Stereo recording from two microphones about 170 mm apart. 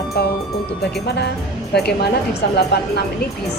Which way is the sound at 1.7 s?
75° left (ahead or behind).